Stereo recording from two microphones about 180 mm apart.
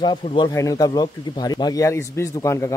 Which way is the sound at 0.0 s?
30° left (ahead or behind).